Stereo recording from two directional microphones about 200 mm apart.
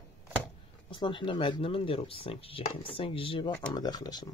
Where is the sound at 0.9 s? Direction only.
25° left (ahead or behind).